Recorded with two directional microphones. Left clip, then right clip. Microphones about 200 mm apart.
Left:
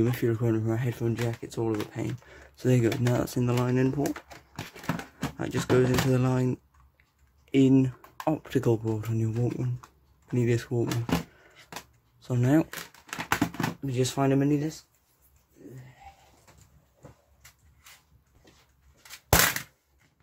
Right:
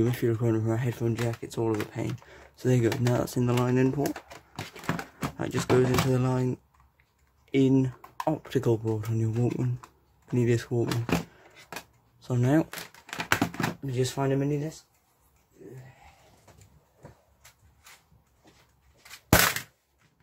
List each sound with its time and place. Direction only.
0.0 s speech: centre (ahead or behind)
4.7 s a sound: centre (ahead or behind)
6.0 s speech: 5° left (ahead or behind)
9.3 s speech: 10° right (ahead or behind)
13.2 s a sound: 5° right (ahead or behind)
13.8 s speech: 10° left (ahead or behind)